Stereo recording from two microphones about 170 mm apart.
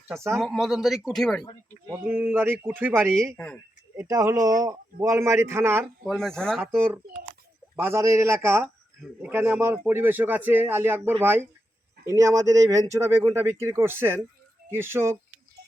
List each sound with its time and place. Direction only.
0.3 s speech: centre (ahead or behind)
1.9 s speech: 10° right (ahead or behind)
3.3 s speech: 5° left (ahead or behind)
3.9 s speech: 20° right (ahead or behind)
6.1 s speech: 5° left (ahead or behind)
7.8 s speech: 15° right (ahead or behind)
8.6 s speech: centre (ahead or behind)
9.3 s speech: 15° right (ahead or behind)